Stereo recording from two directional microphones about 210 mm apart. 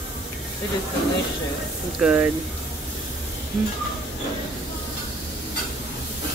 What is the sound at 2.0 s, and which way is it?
Speech, 5° right (ahead or behind).